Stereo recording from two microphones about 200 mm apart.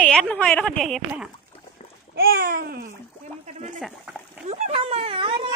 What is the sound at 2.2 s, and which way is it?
Babbling, 50° right (ahead or behind).